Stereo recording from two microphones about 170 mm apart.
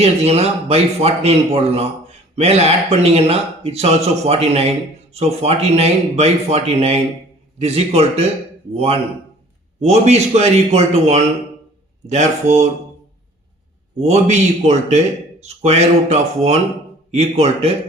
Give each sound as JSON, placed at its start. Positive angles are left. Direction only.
{"t": 0.0, "sound": "a man's voice", "side_deg": -35}
{"t": 14.0, "sound": "a man's voice", "side_deg": -40}